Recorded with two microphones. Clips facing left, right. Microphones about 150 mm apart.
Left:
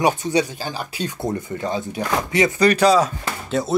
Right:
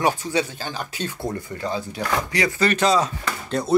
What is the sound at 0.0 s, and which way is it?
Speech, 15° left (ahead or behind).